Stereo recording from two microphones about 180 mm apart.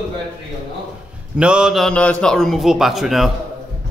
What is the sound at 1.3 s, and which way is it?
A man's voice, 5° right (ahead or behind).